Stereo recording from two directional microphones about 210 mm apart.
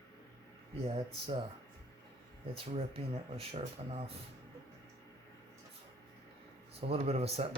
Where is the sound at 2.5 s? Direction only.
25° right (ahead or behind).